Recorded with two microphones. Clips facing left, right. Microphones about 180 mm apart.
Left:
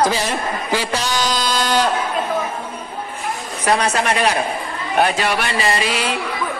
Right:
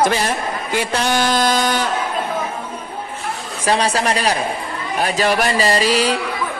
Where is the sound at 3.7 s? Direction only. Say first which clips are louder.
Even; 30° right (ahead or behind).